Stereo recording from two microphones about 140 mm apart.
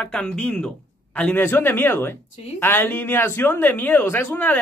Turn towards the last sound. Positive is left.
turn(degrees=15)  # may be behind; listen again after turning